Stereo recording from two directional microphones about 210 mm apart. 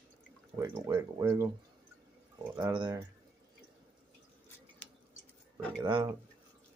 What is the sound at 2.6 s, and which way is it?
Speech, 20° right (ahead or behind).